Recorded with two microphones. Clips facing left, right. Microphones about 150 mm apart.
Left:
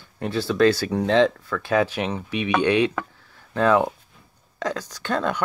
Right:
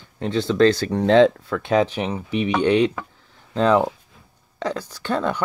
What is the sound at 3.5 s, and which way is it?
Speech, 20° right (ahead or behind).